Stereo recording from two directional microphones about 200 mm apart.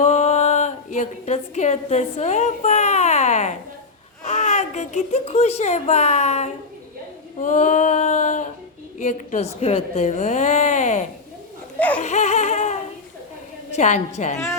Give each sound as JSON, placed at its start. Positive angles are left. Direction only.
{"t": 0.0, "sound": "a woman's voice", "side_deg": 35}
{"t": 11.9, "sound": "a sound", "side_deg": 35}
{"t": 13.7, "sound": "a woman's voice", "side_deg": 35}